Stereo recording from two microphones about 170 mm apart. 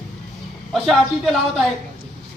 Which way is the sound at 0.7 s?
Centre (ahead or behind).